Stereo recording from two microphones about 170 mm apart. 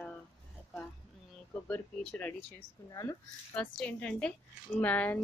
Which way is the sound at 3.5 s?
5° left (ahead or behind).